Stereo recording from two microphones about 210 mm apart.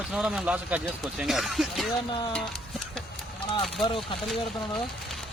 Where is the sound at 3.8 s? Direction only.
25° left (ahead or behind).